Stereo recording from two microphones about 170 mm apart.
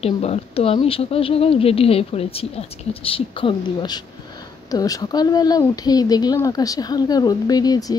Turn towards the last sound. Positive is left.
turn(degrees=20)  # may be behind; listen again after turning